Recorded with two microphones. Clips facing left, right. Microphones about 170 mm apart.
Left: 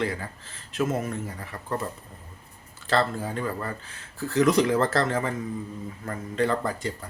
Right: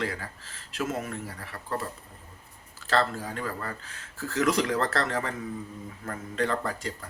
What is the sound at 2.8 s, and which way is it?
Speech, centre (ahead or behind).